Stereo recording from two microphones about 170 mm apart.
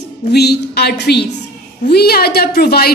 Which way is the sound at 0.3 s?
70° left (ahead or behind).